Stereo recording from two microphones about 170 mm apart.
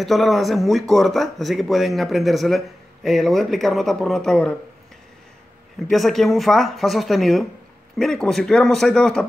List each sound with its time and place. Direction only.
0.0 s speech: centre (ahead or behind)
5.9 s speech: centre (ahead or behind)